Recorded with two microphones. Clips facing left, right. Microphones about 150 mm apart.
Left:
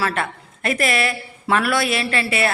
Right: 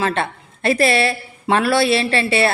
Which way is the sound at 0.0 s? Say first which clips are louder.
Right 3 dB; 30° right (ahead or behind).